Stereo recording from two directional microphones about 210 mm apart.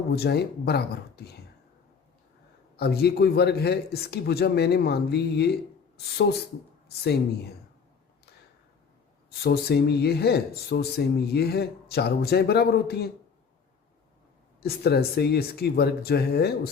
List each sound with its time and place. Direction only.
0.1 s speech: 50° left (ahead or behind)
2.7 s speech: 50° left (ahead or behind)
6.8 s speech: 50° left (ahead or behind)
9.4 s speech: 50° left (ahead or behind)
14.6 s speech: 50° left (ahead or behind)